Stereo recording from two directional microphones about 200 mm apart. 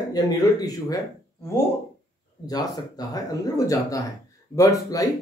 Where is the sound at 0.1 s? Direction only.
20° left (ahead or behind).